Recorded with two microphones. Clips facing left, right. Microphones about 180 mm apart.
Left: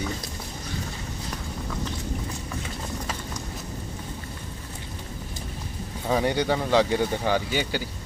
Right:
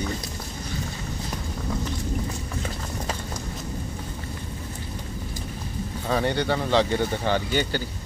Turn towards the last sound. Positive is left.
turn(degrees=10)  # may be behind; listen again after turning